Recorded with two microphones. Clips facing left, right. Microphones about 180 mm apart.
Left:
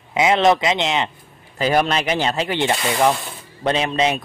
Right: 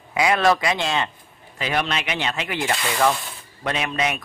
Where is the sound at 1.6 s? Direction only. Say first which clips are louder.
Left 6 dB; 40° left (ahead or behind).